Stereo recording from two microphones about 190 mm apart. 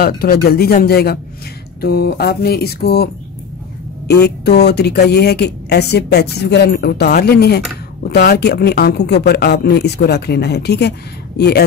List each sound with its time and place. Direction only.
0.0 s speech: 55° left (ahead or behind)
4.1 s speech: 60° left (ahead or behind)